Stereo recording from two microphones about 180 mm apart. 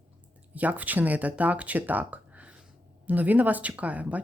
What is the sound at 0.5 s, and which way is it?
Speech, 10° right (ahead or behind).